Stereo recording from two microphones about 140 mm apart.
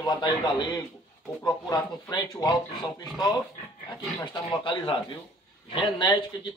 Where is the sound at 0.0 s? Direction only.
30° left (ahead or behind).